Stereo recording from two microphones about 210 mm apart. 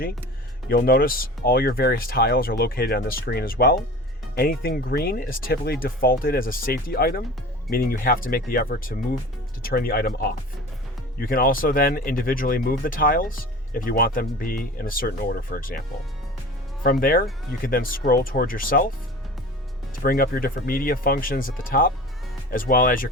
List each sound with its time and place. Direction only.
0.7 s speech: 45° left (ahead or behind)
16.8 s speech: 45° left (ahead or behind)
20.0 s speech: 45° left (ahead or behind)